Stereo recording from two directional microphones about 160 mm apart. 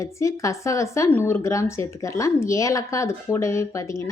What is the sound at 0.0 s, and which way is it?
Speech, 20° left (ahead or behind).